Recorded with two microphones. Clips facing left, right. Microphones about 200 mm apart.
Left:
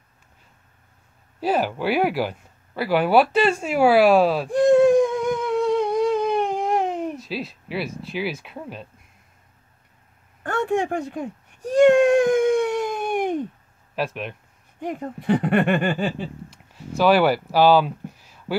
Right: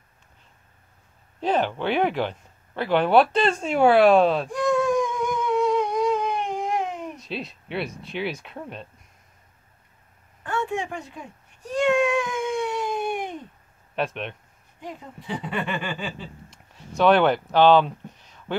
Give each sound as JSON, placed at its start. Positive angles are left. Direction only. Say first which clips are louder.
{"t": 1.4, "sound": "speech", "louder": "left 1 dB", "side_deg": 5}
{"t": 4.5, "sound": "humming", "louder": "left 7 dB", "side_deg": 30}
{"t": 7.2, "sound": "speech", "louder": "left 3 dB", "side_deg": 5}
{"t": 10.4, "sound": "speech", "louder": "left 5 dB", "side_deg": 50}
{"t": 11.7, "sound": "cat", "louder": "left 7 dB", "side_deg": 50}
{"t": 13.9, "sound": "speech", "louder": "left 1 dB", "side_deg": 5}
{"t": 14.8, "sound": "speech", "louder": "left 9 dB", "side_deg": 60}
{"t": 16.4, "sound": "a sound", "louder": "left 7 dB", "side_deg": 5}